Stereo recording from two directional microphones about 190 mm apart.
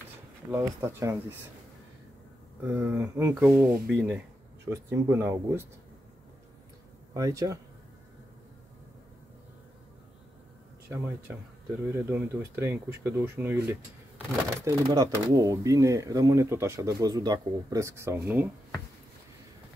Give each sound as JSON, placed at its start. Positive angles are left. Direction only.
{"t": 0.5, "sound": "speech", "side_deg": -15}
{"t": 2.6, "sound": "speech", "side_deg": -10}
{"t": 7.2, "sound": "speech", "side_deg": -15}
{"t": 11.9, "sound": "speech", "side_deg": -10}